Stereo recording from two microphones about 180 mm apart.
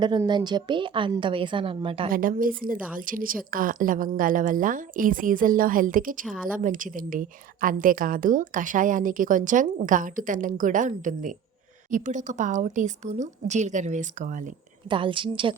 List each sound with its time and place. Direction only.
0.0 s a woman's voice: 25° right (ahead or behind)
2.0 s a woman's voice: 50° right (ahead or behind)
6.2 s speech: centre (ahead or behind)
6.6 s a woman's voice: 45° right (ahead or behind)
14.8 s a woman's voice: 30° right (ahead or behind)